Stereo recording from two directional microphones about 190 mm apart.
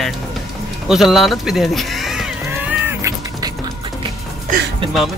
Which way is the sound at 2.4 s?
10° right (ahead or behind).